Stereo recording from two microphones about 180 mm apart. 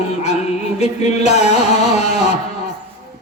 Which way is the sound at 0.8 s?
40° left (ahead or behind).